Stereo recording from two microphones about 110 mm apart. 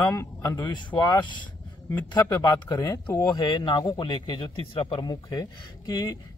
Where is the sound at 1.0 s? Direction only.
45° left (ahead or behind).